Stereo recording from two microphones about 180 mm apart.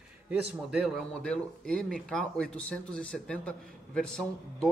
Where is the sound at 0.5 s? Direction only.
5° right (ahead or behind).